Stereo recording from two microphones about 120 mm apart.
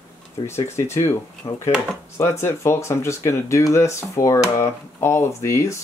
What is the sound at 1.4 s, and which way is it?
Speech, 55° left (ahead or behind).